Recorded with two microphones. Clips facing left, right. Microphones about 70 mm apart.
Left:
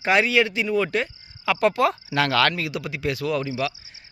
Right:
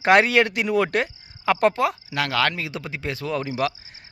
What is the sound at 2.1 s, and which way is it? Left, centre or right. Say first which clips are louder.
Speech: left 3 dB; centre.